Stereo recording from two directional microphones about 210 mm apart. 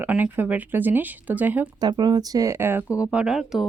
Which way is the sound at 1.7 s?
20° right (ahead or behind).